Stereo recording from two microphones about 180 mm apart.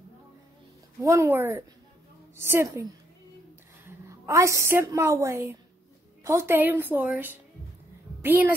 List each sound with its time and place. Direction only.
1.0 s a woman's voice: 15° right (ahead or behind)
4.1 s a woman's voice: 15° right (ahead or behind)